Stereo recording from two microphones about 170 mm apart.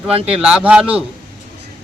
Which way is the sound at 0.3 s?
5° right (ahead or behind).